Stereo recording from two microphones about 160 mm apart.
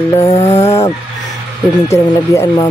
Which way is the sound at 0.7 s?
20° left (ahead or behind).